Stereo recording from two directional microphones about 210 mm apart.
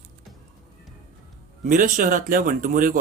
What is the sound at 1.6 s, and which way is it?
Speech, 40° right (ahead or behind).